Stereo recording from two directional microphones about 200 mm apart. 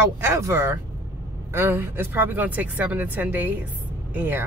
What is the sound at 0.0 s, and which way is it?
Speech, 10° right (ahead or behind).